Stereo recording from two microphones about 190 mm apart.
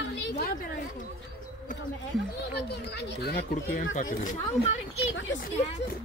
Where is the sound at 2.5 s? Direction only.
60° left (ahead or behind).